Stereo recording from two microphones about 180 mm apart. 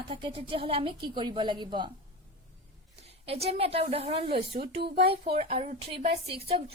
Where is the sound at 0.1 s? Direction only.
30° right (ahead or behind).